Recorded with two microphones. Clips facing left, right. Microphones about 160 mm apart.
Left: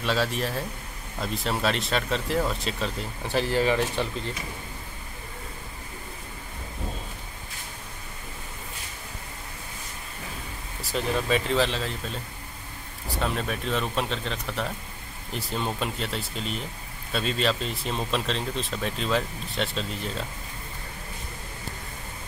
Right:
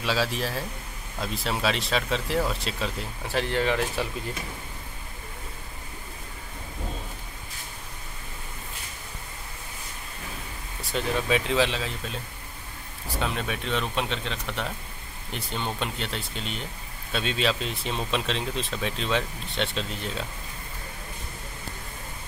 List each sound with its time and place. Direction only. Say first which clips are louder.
0.0 s speech: left 1 dB; centre (ahead or behind)
10.8 s speech: left 1 dB; centre (ahead or behind)